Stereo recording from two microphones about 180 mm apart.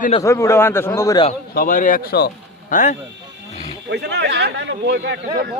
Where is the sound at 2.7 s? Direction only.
45° left (ahead or behind).